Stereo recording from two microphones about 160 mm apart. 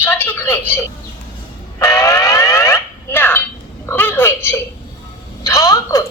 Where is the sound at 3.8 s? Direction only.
15° left (ahead or behind).